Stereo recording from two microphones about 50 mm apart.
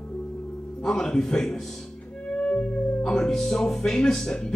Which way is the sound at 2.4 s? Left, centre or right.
Left.